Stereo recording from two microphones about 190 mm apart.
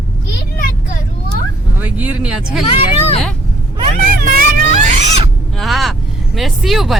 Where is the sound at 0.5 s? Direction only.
50° left (ahead or behind).